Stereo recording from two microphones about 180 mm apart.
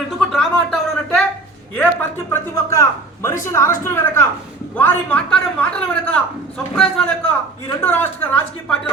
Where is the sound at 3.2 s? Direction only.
15° left (ahead or behind).